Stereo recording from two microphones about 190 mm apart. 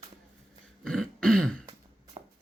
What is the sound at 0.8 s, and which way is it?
Throat clearing, 5° left (ahead or behind).